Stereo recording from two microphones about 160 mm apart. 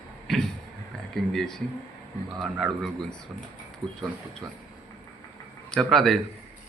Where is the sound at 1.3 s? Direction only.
5° left (ahead or behind).